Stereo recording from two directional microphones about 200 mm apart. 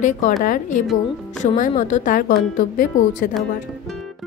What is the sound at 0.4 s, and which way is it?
Speech, 40° left (ahead or behind).